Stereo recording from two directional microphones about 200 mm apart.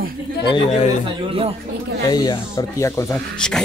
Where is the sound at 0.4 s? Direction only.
25° left (ahead or behind).